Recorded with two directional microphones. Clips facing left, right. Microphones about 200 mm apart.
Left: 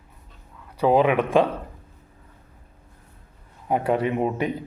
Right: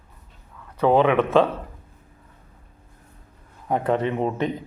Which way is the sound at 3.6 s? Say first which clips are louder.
Even; 10° left (ahead or behind).